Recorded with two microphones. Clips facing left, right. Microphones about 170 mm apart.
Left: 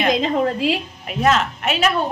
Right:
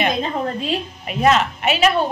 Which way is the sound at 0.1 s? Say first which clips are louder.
Left 4 dB; 90° left.